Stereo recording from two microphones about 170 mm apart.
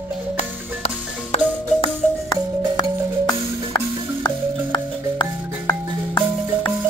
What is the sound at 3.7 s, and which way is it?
Music, 25° left (ahead or behind).